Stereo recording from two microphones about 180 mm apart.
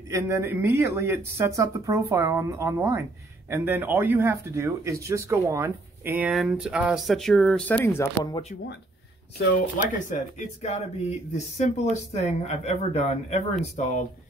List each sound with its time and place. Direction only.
0.1 s speech: 15° right (ahead or behind); by 8.4 s 15° left (ahead or behind)
9.5 s speech: 45° left (ahead or behind)